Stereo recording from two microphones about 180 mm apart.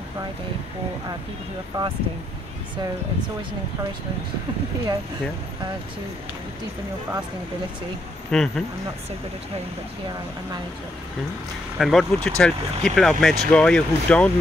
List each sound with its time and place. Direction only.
1.7 s speech: 25° right (ahead or behind)
8.3 s speech: 5° left (ahead or behind)
11.8 s speech: centre (ahead or behind)